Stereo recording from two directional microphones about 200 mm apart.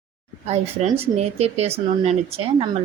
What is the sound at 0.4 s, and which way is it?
Speech, 30° right (ahead or behind).